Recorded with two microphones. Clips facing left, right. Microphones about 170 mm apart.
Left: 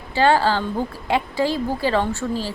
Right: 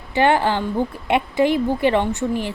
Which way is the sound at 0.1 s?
20° right (ahead or behind).